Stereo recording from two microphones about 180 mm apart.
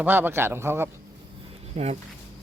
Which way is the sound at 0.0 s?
10° right (ahead or behind).